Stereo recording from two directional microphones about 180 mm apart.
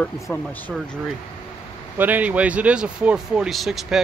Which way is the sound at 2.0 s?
10° right (ahead or behind).